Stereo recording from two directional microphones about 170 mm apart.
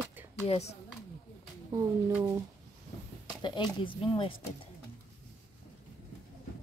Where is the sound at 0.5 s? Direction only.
40° left (ahead or behind).